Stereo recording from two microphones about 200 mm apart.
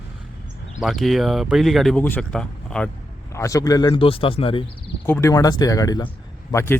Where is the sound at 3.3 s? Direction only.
15° left (ahead or behind).